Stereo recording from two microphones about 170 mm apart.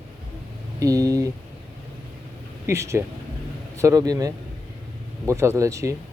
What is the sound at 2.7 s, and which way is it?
Speech, 15° right (ahead or behind).